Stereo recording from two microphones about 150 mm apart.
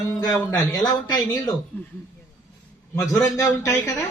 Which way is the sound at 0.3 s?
20° left (ahead or behind).